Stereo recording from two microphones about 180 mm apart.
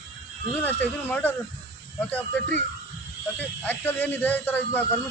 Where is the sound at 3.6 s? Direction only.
10° left (ahead or behind).